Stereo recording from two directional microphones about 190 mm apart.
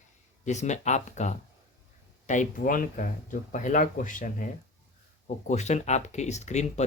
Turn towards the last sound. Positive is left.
turn(degrees=35)  # may be behind; listen again after turning